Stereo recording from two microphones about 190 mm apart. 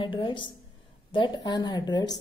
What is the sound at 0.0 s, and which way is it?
Speech, 25° left (ahead or behind).